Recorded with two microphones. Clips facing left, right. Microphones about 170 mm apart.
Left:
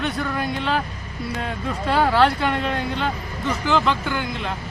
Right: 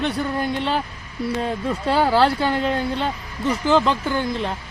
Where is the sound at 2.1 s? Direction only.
30° right (ahead or behind).